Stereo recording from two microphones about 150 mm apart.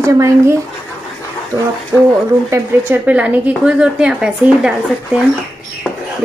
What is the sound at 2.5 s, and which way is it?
A woman's voice, 10° right (ahead or behind).